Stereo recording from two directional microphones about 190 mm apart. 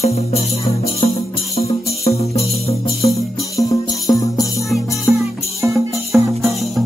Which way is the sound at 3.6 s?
20° left (ahead or behind).